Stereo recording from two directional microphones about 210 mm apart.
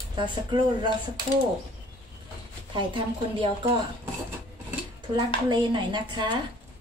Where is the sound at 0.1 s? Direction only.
20° right (ahead or behind).